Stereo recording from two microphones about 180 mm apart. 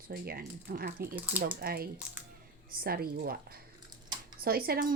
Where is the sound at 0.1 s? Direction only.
55° right (ahead or behind).